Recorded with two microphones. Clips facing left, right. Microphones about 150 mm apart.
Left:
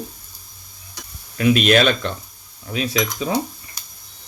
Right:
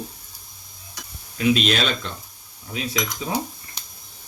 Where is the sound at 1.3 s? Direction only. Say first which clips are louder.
Left 5 dB; 60° left (ahead or behind).